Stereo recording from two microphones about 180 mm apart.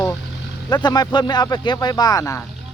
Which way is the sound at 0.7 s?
25° left (ahead or behind).